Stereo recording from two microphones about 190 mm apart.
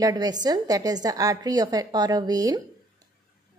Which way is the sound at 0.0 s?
20° right (ahead or behind).